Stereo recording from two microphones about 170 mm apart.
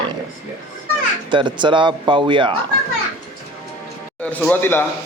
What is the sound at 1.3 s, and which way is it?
Speech, 25° right (ahead or behind).